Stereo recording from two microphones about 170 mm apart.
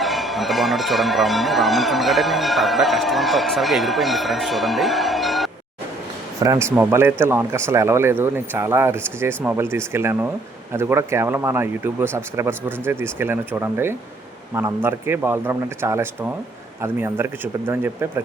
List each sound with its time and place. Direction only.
0.0 s speech: centre (ahead or behind)
6.4 s speech: 20° right (ahead or behind)